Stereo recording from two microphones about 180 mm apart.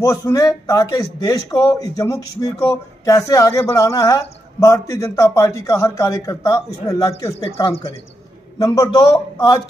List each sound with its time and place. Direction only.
0.0 s a man's voice: 20° left (ahead or behind)